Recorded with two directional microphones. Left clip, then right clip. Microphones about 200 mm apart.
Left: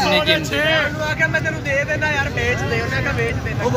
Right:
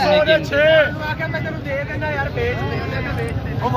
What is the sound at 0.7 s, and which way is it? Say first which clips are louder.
Speech: right 3 dB; 25° right (ahead or behind).